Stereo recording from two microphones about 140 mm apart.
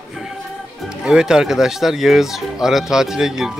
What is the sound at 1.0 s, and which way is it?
Speech, 5° right (ahead or behind).